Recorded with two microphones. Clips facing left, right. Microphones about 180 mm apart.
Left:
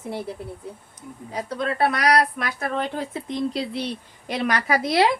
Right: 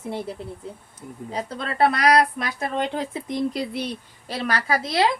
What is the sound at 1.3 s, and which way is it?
Speech, 30° right (ahead or behind).